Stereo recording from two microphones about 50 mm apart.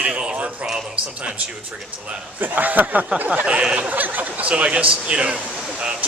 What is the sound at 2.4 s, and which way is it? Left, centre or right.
Speech, right.